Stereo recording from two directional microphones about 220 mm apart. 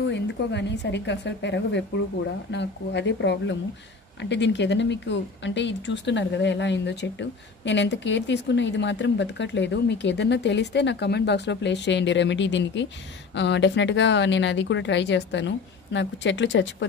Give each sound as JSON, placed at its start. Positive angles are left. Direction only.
{"t": 0.1, "sound": "speech", "side_deg": 50}